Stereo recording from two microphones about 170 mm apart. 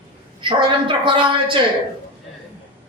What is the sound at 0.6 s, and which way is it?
Speech, 30° right (ahead or behind).